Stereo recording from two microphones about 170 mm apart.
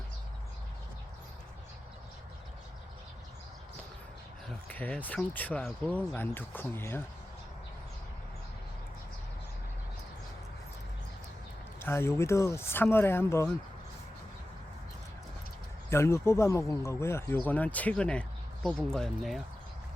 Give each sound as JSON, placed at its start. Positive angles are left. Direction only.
{"t": 4.4, "sound": "speech", "side_deg": 10}
{"t": 11.8, "sound": "speech", "side_deg": 15}
{"t": 15.9, "sound": "speech", "side_deg": 15}